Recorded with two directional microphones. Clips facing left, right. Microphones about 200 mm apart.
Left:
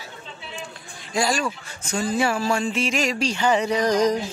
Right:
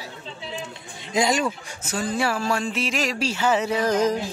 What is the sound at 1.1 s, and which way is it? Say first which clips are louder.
Speech: right 2 dB; 20° right (ahead or behind).